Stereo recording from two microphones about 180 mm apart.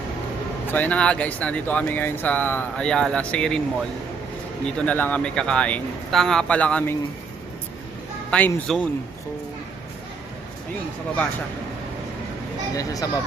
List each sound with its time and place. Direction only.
0.7 s speech: 10° left (ahead or behind)
4.6 s speech: 5° left (ahead or behind)
8.3 s speech: 5° left (ahead or behind)
12.7 s speech: 20° left (ahead or behind)